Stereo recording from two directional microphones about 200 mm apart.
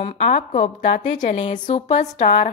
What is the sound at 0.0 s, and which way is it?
A woman's voice, 30° left (ahead or behind).